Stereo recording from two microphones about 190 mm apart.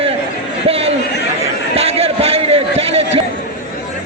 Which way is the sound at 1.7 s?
30° right (ahead or behind).